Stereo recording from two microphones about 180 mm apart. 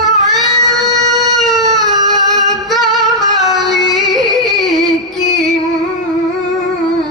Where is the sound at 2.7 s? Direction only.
Centre (ahead or behind).